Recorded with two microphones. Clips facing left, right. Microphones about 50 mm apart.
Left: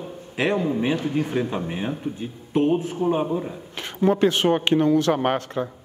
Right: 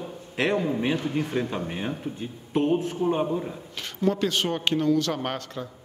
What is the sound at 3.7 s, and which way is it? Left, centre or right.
A man's voice, left.